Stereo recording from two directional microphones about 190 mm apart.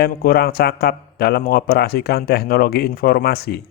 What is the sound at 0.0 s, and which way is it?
Speech, 50° left (ahead or behind).